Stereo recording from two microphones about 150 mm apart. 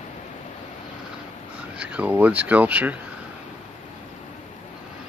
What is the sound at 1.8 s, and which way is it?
Speech, 10° right (ahead or behind).